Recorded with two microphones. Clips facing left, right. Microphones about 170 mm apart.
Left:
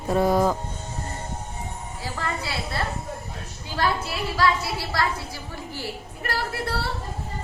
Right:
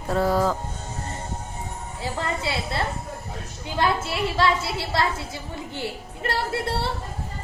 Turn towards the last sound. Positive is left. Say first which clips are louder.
# right 2 dB
turn(degrees=-25)  # may be behind; listen again after turning